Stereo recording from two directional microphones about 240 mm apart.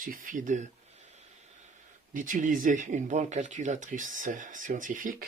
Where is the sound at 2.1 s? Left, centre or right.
Right.